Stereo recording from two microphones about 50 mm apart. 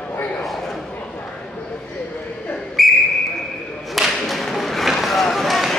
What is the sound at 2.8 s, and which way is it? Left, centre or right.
Whistle, centre.